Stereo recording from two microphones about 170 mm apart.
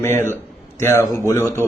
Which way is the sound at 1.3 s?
15° left (ahead or behind).